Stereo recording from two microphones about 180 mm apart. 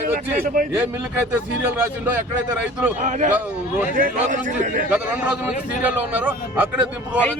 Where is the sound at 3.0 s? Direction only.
40° right (ahead or behind).